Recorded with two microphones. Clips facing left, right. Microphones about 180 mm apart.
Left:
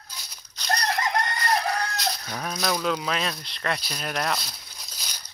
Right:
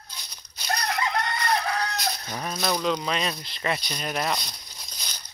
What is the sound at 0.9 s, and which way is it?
Crowing, 45° left (ahead or behind).